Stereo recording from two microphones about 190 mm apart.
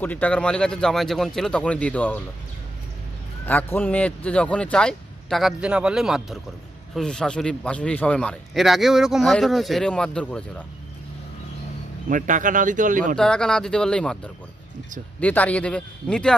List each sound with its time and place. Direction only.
0.0 s speech: 10° left (ahead or behind)
3.4 s speech: 10° left (ahead or behind)
12.1 s a man's voice: 45° right (ahead or behind)
13.1 s a man's voice: 5° left (ahead or behind)